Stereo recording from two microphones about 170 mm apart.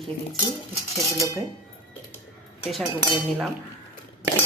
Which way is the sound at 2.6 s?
Centre (ahead or behind).